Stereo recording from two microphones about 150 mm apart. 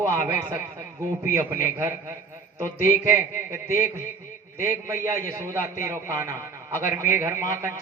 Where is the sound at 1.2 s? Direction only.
15° right (ahead or behind).